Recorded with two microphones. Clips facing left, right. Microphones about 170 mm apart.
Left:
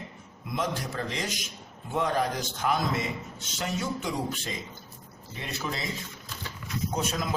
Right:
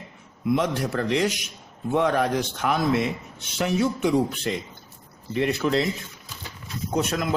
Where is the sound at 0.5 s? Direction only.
65° right (ahead or behind).